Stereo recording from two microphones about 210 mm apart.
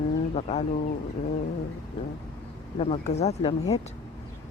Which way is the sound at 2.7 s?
30° left (ahead or behind).